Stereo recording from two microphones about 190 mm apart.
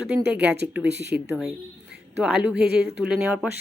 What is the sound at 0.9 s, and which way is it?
Speech, 65° right (ahead or behind).